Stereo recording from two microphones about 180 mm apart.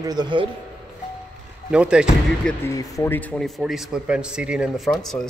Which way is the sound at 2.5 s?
15° left (ahead or behind).